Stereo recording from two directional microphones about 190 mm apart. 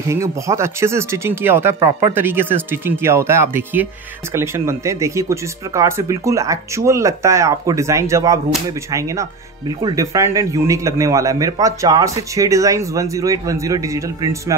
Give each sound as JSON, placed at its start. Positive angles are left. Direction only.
{"t": 0.1, "sound": "speech", "side_deg": -15}